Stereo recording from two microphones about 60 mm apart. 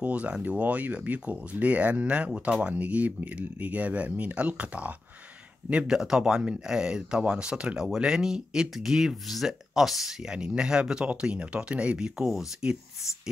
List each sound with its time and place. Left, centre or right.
0.0 s speech: right